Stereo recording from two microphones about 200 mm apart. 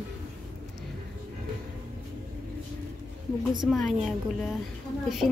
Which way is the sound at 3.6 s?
Centre (ahead or behind).